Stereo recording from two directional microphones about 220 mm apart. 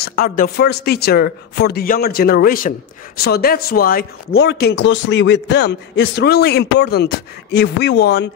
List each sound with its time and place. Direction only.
0.0 s speech: 40° left (ahead or behind)